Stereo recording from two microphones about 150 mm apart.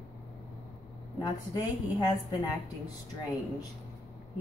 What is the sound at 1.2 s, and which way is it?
A woman's voice, 25° left (ahead or behind).